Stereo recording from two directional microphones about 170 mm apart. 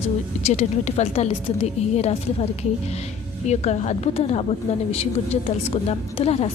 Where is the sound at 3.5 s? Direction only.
40° left (ahead or behind).